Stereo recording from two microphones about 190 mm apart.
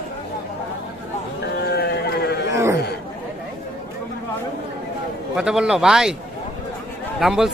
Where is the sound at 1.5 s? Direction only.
60° left (ahead or behind).